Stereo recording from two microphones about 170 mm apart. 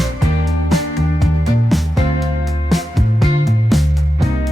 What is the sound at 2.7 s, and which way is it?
Music, centre (ahead or behind).